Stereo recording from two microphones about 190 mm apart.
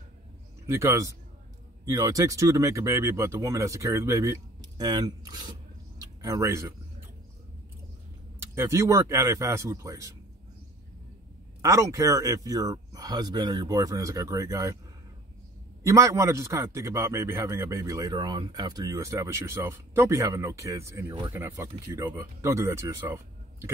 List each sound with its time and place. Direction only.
0.7 s a man's voice: 15° right (ahead or behind)
5.9 s a sound: 20° right (ahead or behind)
8.4 s a man's voice: 15° right (ahead or behind)
11.6 s a man's voice: 15° right (ahead or behind)
15.8 s a man's voice: 15° right (ahead or behind)